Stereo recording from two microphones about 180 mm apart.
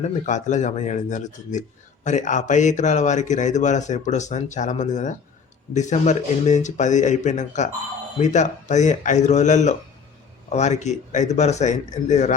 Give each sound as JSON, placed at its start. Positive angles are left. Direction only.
{"t": 0.3, "sound": "speech", "side_deg": 40}